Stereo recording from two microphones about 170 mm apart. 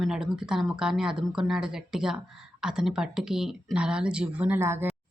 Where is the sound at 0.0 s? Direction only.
5° right (ahead or behind).